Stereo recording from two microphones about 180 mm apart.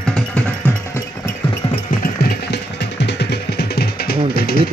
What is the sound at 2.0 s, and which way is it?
Music, 70° left (ahead or behind).